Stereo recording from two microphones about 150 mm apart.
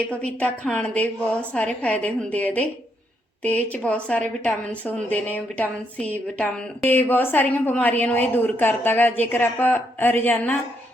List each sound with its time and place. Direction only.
0.3 s a woman's voice: 10° left (ahead or behind)